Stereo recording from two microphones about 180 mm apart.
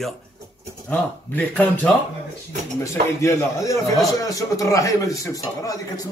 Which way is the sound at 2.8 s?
15° left (ahead or behind).